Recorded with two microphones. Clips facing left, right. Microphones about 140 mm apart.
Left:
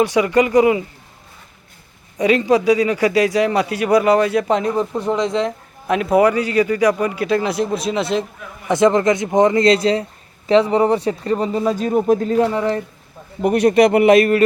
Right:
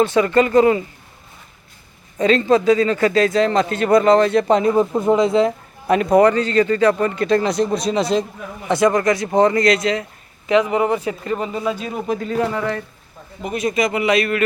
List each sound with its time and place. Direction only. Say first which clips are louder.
0.0 s a man's voice: even; 15° left (ahead or behind)
2.1 s a man's voice: even; 15° left (ahead or behind)
8.6 s speech: left 2 dB; 20° left (ahead or behind)
13.4 s a man's voice: left 8 dB; 65° left (ahead or behind); by 14.4 s 45° left (ahead or behind)